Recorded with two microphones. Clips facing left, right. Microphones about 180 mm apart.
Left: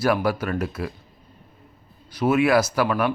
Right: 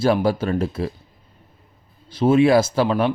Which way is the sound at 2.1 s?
25° right (ahead or behind).